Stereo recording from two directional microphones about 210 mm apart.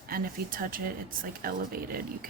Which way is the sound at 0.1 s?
40° right (ahead or behind).